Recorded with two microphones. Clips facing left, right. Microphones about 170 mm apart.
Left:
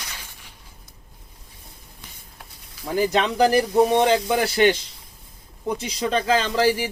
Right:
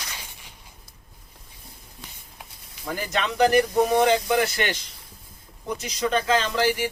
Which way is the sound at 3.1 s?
30° left (ahead or behind).